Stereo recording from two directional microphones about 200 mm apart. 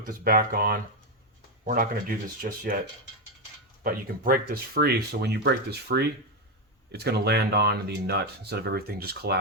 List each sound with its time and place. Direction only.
0.0 s speech: 45° right (ahead or behind)
3.8 s speech: 45° right (ahead or behind)